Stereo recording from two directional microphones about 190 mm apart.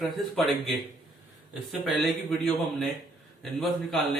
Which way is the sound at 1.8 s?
Centre (ahead or behind).